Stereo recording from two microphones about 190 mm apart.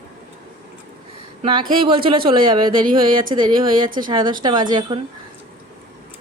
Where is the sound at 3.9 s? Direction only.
45° right (ahead or behind).